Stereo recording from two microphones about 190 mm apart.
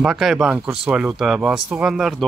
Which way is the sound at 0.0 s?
5° right (ahead or behind).